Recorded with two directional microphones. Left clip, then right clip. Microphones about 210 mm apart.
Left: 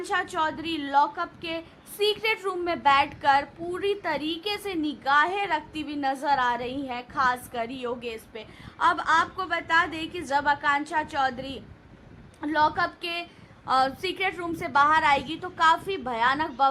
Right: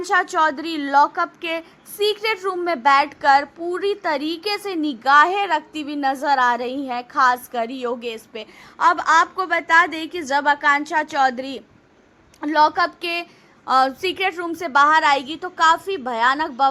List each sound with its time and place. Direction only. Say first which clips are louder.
0.1 s a woman's voice: right 9 dB; 25° right (ahead or behind)